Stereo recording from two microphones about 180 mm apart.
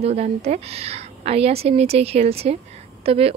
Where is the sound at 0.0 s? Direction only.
35° right (ahead or behind).